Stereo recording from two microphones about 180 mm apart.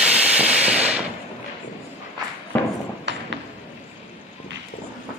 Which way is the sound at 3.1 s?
80° right.